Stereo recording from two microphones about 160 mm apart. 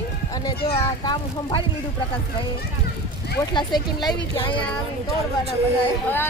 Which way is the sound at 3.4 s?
25° left (ahead or behind).